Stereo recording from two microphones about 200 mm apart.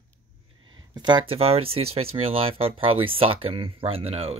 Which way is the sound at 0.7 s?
20° right (ahead or behind).